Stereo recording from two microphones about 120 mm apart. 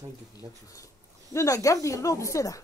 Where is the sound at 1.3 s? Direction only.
25° left (ahead or behind).